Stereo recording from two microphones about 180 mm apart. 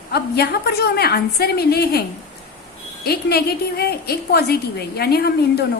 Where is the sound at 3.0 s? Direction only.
60° left (ahead or behind).